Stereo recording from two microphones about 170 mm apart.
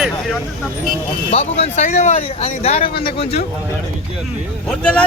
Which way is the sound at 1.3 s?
35° left (ahead or behind).